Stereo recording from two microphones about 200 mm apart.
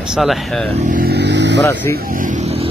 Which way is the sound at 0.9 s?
50° right (ahead or behind).